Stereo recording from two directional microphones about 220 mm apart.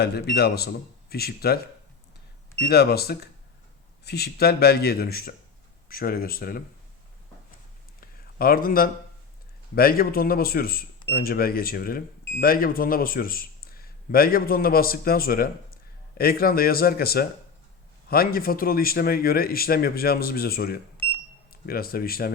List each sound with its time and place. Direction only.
0.0 s speech: 50° left (ahead or behind)
2.6 s speech: 45° left (ahead or behind)
8.0 s a sound: 40° left (ahead or behind)
9.7 s speech: 40° left (ahead or behind)